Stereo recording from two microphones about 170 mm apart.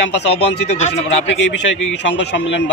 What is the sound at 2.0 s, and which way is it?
Speech, 90° left.